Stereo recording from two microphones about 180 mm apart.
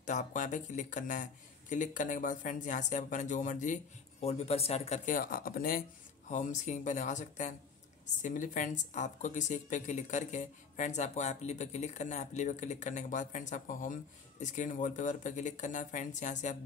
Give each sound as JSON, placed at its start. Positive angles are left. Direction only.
{"t": 0.0, "sound": "speech", "side_deg": 45}